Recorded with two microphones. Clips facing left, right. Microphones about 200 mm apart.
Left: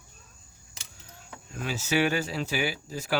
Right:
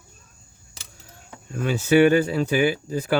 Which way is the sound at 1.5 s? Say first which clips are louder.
Right 10 dB; 55° right (ahead or behind).